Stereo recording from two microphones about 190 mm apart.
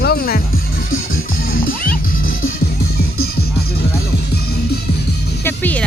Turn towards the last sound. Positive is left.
turn(degrees=10)  # may be behind; listen again after turning